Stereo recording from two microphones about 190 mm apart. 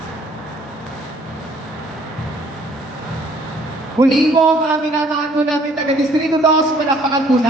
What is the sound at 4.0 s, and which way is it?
Speech, 20° right (ahead or behind).